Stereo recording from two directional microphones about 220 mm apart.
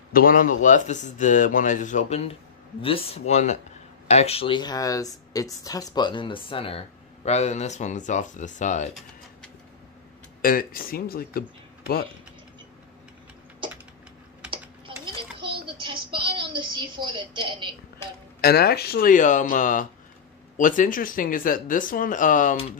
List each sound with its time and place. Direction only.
0.1 s a man's voice: 40° left (ahead or behind)
10.4 s a man's voice: 40° left (ahead or behind)
15.0 s a sound: 20° right (ahead or behind)
18.4 s a man's voice: 45° left (ahead or behind)